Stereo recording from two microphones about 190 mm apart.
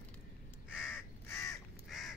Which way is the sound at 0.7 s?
10° left (ahead or behind).